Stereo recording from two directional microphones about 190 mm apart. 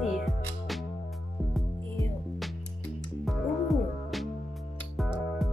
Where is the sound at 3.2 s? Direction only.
Centre (ahead or behind).